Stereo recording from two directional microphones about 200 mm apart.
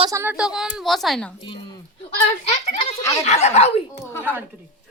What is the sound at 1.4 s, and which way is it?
Speech, 25° left (ahead or behind).